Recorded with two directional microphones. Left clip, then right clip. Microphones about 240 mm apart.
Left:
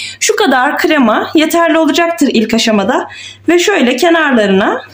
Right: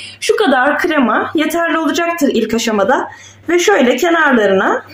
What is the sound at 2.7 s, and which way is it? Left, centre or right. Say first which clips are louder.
A woman's voice: even; left.